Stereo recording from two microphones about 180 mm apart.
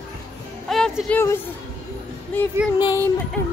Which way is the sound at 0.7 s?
5° left (ahead or behind).